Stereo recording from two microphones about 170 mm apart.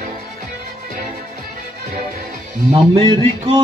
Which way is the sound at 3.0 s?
30° right (ahead or behind).